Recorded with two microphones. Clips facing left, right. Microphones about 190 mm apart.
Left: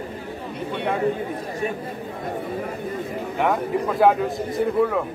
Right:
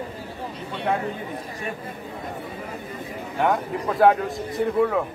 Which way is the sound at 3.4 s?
Centre (ahead or behind).